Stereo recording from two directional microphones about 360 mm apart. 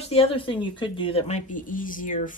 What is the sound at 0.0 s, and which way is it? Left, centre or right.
Speech, centre.